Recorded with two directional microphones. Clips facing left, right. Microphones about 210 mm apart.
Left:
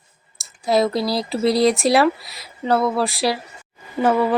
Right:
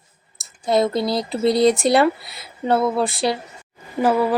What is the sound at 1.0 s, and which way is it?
Speech, 20° right (ahead or behind).